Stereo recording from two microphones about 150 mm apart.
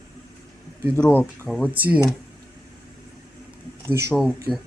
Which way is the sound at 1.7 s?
10° right (ahead or behind).